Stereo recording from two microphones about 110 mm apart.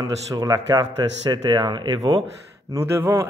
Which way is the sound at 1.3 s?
45° right (ahead or behind).